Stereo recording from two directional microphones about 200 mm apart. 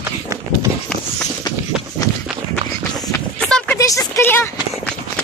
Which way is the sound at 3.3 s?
5° left (ahead or behind).